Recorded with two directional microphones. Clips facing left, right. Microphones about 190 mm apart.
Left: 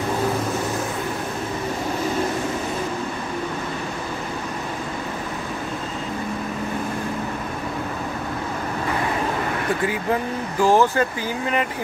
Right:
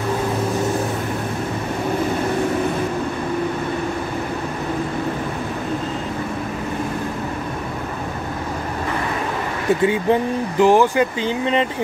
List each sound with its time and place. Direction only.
9.8 s speech: 20° right (ahead or behind)